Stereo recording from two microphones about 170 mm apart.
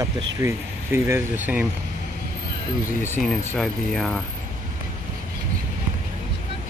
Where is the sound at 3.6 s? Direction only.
Centre (ahead or behind).